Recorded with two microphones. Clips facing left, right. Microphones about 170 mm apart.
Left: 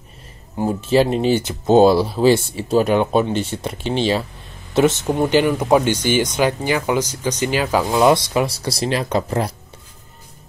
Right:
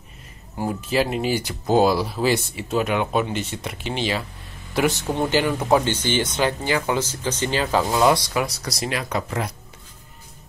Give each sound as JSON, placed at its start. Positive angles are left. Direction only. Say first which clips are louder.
{"t": 0.6, "sound": "speech", "louder": "left 6 dB", "side_deg": 25}